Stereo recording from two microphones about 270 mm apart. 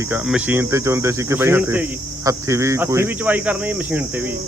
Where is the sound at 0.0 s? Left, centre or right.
Centre.